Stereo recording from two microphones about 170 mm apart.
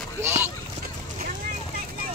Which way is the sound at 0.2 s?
15° right (ahead or behind).